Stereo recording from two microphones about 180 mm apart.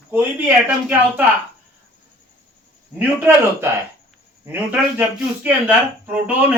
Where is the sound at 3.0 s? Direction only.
10° right (ahead or behind).